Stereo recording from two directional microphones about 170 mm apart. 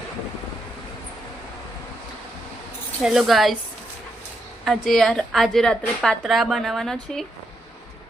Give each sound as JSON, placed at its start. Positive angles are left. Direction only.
{"t": 3.0, "sound": "a woman's voice", "side_deg": 0}
{"t": 4.6, "sound": "a woman's voice", "side_deg": 0}